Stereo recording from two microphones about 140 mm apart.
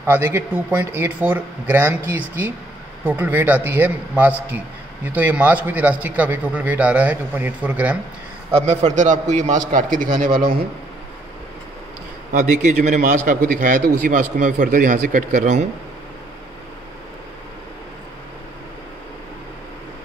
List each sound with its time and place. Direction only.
0.0 s a man's voice: 15° right (ahead or behind)
8.5 s a man's voice: 55° right (ahead or behind); by 10.2 s 75° right (ahead or behind)
12.3 s a man's voice: 60° right (ahead or behind)